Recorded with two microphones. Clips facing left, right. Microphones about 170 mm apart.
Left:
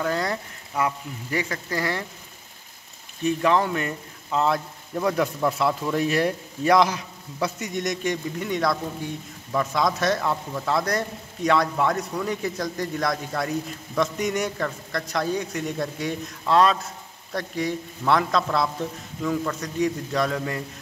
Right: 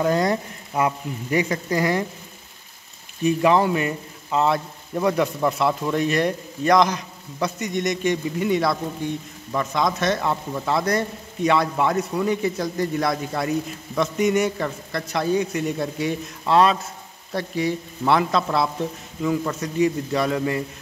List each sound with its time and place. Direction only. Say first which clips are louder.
0.0 s speech: right 6 dB; 20° right (ahead or behind)
3.3 s a man's voice: right 3 dB; 10° right (ahead or behind)